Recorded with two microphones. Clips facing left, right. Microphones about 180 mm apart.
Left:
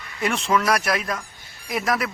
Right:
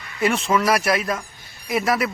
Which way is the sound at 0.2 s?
5° right (ahead or behind).